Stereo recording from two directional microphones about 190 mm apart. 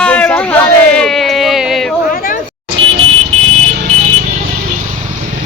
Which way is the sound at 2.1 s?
50° left (ahead or behind).